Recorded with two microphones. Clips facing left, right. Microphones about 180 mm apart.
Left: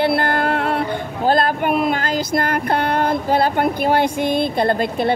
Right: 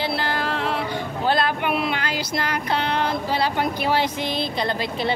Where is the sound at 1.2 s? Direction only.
45° left (ahead or behind).